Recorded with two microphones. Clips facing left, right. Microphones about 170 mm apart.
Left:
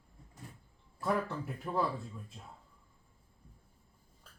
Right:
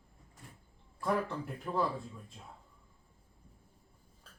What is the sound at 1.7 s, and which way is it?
Speech, 20° left (ahead or behind).